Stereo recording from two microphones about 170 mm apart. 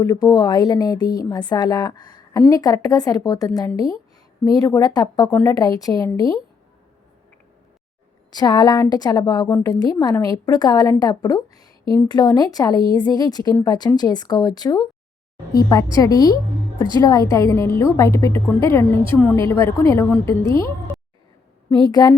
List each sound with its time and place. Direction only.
0.0 s a woman's voice: 20° left (ahead or behind)
8.3 s a woman's voice: 25° left (ahead or behind)